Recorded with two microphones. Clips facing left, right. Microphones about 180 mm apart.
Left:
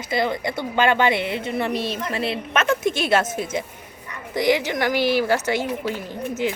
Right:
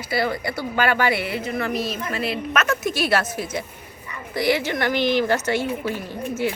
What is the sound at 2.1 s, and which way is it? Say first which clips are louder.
A woman's voice: even; 25° left (ahead or behind).